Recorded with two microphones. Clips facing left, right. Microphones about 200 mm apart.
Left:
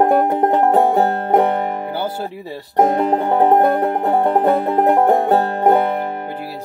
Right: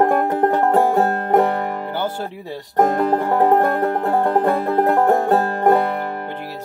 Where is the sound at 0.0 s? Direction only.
15° left (ahead or behind).